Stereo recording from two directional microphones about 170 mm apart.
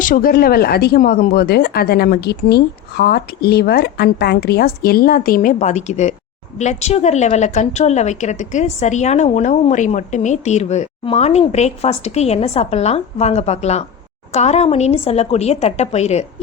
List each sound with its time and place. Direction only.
0.0 s a woman's voice: 55° left (ahead or behind); by 16.2 s 40° left (ahead or behind)